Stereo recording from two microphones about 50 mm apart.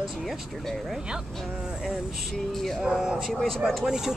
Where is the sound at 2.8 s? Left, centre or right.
Centre.